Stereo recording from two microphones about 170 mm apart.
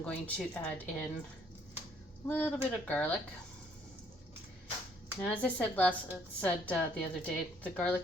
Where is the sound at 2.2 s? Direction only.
10° left (ahead or behind).